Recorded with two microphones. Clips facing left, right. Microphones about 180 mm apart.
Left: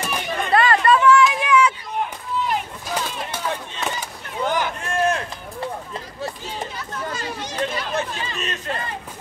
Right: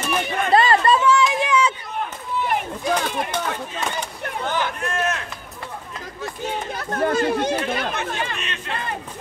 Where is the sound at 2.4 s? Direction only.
60° right (ahead or behind).